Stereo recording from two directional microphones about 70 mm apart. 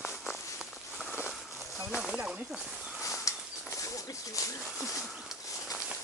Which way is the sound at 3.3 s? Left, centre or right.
Left.